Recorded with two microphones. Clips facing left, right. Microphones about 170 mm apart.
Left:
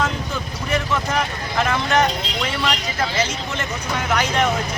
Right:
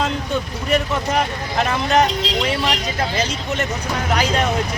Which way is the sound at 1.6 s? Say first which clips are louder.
Right 2 dB; 35° right (ahead or behind).